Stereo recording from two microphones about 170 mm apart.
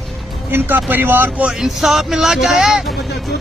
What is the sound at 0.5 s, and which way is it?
Speech, 10° right (ahead or behind).